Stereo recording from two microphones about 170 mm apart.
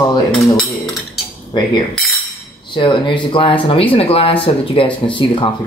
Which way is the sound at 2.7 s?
30° left (ahead or behind).